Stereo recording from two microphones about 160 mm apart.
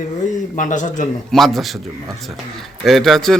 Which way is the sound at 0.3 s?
55° left (ahead or behind).